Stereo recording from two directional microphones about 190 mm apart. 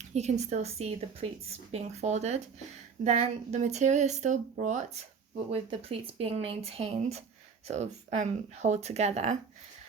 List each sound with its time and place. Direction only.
0.0 s speech: 35° right (ahead or behind)